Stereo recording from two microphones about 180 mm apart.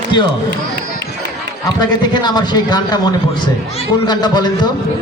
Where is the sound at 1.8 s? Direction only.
25° left (ahead or behind).